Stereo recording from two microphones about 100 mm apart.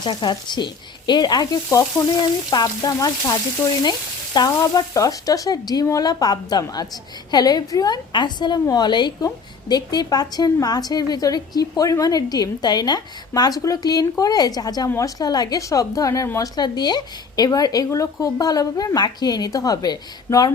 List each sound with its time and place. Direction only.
0.0 s a woman's voice: 50° left (ahead or behind)
4.4 s a woman's voice: 40° left (ahead or behind)
14.8 s a woman's voice: 30° left (ahead or behind)
15.2 s a woman's voice: 40° left (ahead or behind)
16.6 s a woman's voice: 45° left (ahead or behind)